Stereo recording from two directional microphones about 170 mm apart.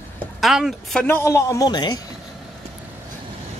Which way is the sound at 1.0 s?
15° left (ahead or behind).